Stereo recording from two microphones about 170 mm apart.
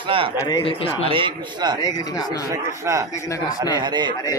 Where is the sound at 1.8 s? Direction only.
20° left (ahead or behind).